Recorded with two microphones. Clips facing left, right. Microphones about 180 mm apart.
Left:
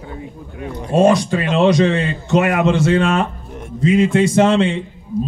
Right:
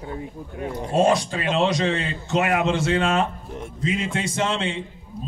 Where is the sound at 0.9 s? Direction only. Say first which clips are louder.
Left 6 dB; 75° left (ahead or behind).